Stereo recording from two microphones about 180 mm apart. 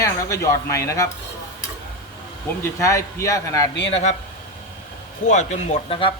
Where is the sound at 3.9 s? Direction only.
40° left (ahead or behind).